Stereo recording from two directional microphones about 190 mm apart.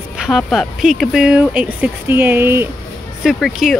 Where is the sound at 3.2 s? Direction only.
Centre (ahead or behind).